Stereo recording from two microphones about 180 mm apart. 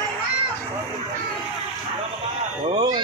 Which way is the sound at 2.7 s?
20° right (ahead or behind).